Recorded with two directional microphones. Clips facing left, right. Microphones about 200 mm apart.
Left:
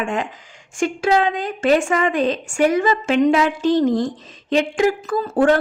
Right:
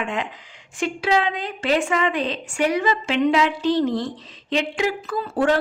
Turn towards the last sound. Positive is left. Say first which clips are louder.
# left 4 dB
turn(degrees=50)  # may be behind; listen again after turning